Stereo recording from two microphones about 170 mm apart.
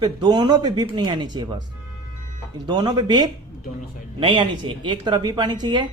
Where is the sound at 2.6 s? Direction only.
25° right (ahead or behind).